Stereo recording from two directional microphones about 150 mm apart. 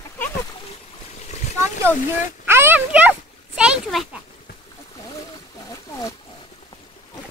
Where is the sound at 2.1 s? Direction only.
15° right (ahead or behind).